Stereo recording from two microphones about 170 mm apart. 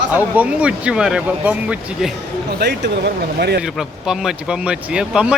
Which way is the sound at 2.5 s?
75° right (ahead or behind).